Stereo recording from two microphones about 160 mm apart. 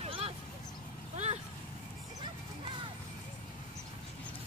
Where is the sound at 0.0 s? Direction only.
40° right (ahead or behind).